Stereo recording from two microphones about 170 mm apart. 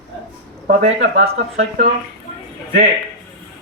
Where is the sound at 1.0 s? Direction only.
80° right.